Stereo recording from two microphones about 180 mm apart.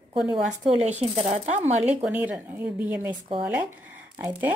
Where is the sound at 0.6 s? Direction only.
40° right (ahead or behind).